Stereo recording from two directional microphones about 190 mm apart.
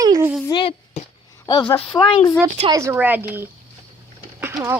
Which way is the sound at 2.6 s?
15° right (ahead or behind).